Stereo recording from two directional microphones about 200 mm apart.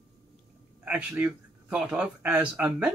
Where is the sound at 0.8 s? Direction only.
10° right (ahead or behind).